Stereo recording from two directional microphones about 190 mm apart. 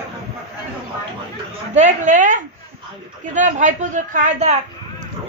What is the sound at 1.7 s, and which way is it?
A man's voice, 40° right (ahead or behind).